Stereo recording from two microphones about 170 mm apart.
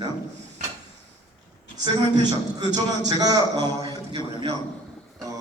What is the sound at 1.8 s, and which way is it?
A man's voice, 25° right (ahead or behind).